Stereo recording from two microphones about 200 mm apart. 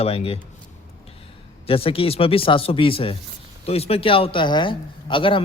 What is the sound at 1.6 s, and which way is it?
A man's voice, 30° left (ahead or behind).